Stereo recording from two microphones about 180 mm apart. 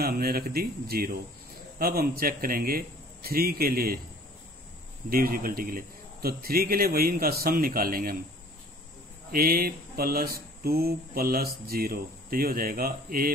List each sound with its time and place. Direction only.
0.0 s speech: 55° right (ahead or behind)
5.1 s speech: 55° right (ahead or behind)
9.3 s speech: 55° right (ahead or behind)